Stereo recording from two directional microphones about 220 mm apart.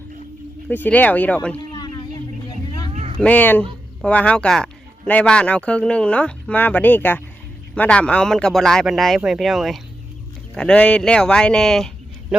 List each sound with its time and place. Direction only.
0.7 s speech: 10° left (ahead or behind)
1.5 s a sound: 20° left (ahead or behind)
2.9 s cat: 30° right (ahead or behind)
3.2 s speech: 5° left (ahead or behind)